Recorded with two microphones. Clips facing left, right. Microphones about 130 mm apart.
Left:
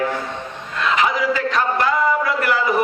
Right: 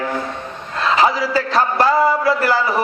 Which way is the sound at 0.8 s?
35° right (ahead or behind).